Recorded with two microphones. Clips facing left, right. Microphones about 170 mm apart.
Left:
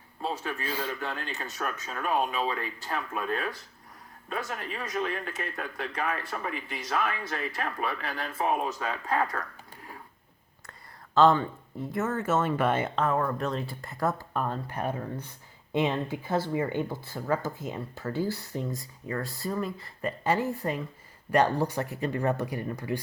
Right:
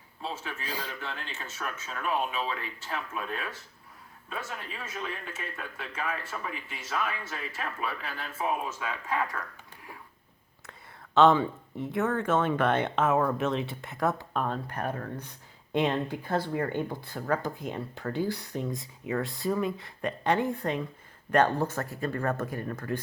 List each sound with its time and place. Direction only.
0.2 s a sound: 45° left (ahead or behind)
0.8 s speech: 45° left (ahead or behind)
10.7 s speech: centre (ahead or behind)
13.0 s speech: 5° right (ahead or behind); by 23.0 s 15° left (ahead or behind)